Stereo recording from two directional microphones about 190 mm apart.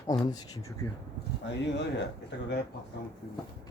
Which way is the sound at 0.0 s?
20° left (ahead or behind).